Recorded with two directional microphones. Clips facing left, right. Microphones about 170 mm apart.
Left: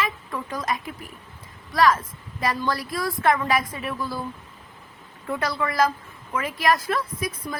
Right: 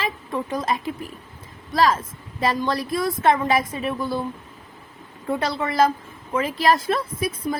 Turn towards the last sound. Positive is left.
turn(degrees=-30)  # may be behind; listen again after turning